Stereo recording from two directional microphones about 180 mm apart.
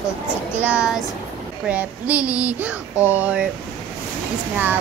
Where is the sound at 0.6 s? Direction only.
10° right (ahead or behind).